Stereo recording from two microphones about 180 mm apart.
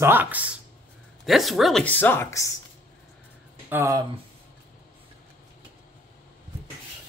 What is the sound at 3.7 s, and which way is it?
Speech, 15° right (ahead or behind).